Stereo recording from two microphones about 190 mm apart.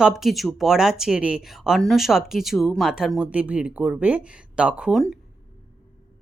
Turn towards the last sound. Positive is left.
turn(degrees=0)  # may be behind; listen again after turning